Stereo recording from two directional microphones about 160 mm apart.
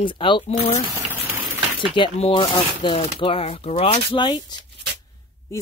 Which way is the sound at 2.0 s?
35° left (ahead or behind).